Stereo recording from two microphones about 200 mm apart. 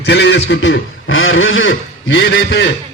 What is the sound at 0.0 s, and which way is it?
A man's voice, 60° left (ahead or behind).